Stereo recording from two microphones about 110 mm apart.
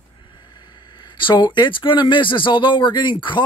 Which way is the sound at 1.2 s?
40° left (ahead or behind).